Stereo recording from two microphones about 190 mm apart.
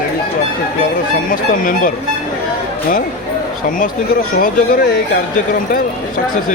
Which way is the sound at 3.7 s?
45° left (ahead or behind).